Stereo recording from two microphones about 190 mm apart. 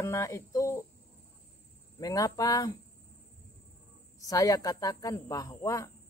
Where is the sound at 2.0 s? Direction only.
20° left (ahead or behind).